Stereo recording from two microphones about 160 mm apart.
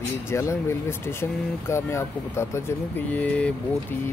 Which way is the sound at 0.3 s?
15° left (ahead or behind).